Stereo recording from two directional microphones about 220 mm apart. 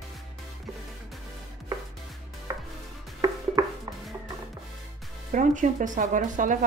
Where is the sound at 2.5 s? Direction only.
15° right (ahead or behind).